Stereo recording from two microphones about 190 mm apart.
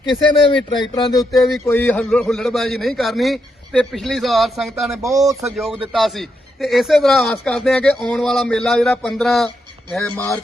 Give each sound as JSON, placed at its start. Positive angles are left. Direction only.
{"t": 0.4, "sound": "speech", "side_deg": 25}
{"t": 1.3, "sound": "a man's voice", "side_deg": 0}
{"t": 1.6, "sound": "a man's voice", "side_deg": 10}
{"t": 10.0, "sound": "speech", "side_deg": 15}